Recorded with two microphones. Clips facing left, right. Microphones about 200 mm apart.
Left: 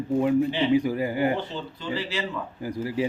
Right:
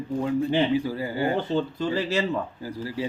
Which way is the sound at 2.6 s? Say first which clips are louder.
Left 3 dB; 20° left (ahead or behind).